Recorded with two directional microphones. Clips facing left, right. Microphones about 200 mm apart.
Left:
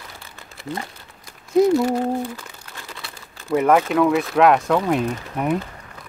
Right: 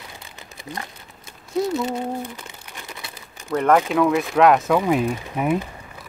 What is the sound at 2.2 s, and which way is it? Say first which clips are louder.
Crumpling: left 4 dB; 20° right (ahead or behind).